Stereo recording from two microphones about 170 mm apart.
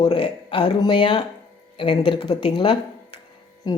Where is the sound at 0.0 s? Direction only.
30° left (ahead or behind).